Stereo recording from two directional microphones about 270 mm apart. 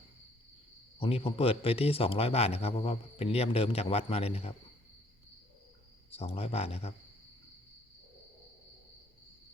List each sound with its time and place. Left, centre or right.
0.9 s speech: left
6.1 s speech: left